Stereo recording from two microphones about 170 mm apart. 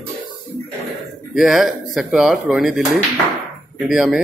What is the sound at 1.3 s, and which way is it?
Speech, centre (ahead or behind).